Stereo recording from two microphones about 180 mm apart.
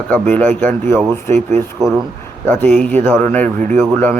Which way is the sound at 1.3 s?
40° right (ahead or behind).